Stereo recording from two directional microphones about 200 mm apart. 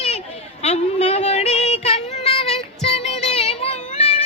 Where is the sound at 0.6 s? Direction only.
35° left (ahead or behind).